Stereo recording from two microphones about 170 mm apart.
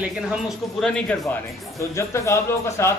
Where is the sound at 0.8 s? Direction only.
5° left (ahead or behind).